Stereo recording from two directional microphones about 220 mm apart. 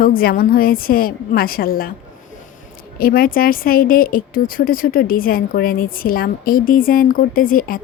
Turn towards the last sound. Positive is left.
turn(degrees=40)  # may be behind; listen again after turning